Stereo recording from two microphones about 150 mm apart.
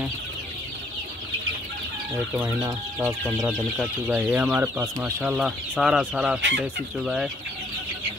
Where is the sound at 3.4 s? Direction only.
5° right (ahead or behind).